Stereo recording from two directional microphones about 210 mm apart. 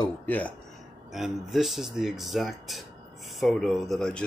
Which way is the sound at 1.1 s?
Centre (ahead or behind).